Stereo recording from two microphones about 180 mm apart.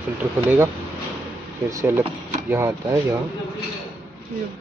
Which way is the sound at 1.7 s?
15° right (ahead or behind).